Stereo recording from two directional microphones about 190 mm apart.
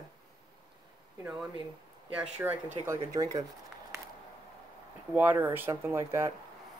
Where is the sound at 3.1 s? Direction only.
20° right (ahead or behind).